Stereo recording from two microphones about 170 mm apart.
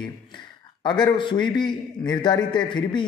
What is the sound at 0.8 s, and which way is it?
A man's voice, 25° left (ahead or behind).